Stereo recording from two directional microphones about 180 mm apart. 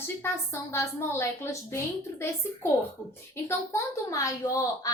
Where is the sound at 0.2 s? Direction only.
15° left (ahead or behind).